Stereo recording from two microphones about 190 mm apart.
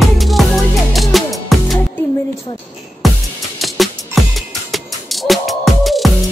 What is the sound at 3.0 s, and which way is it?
Music, centre (ahead or behind).